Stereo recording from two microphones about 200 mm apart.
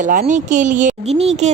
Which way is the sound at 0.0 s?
40° right (ahead or behind).